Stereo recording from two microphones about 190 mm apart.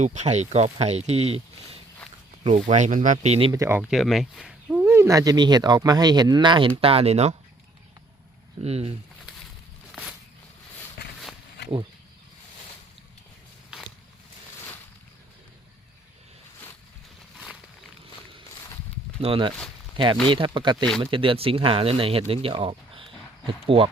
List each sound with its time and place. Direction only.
0.0 s speech: 40° right (ahead or behind)
2.4 s speech: 35° right (ahead or behind)
3.5 s speech: 15° right (ahead or behind); by 7.3 s 35° right (ahead or behind)
8.6 s speech: 35° right (ahead or behind)
9.9 s a sound: centre (ahead or behind)
13.7 s a sound: centre (ahead or behind)
19.2 s speech: 30° right (ahead or behind)